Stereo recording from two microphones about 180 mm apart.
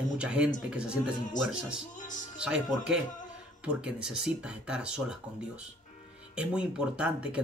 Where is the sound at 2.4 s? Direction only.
5° right (ahead or behind).